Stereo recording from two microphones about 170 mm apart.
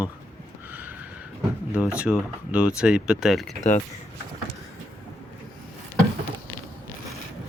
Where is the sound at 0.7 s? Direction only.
10° right (ahead or behind).